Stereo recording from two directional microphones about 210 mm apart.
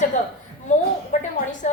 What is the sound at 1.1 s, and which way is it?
Speech, 35° left (ahead or behind).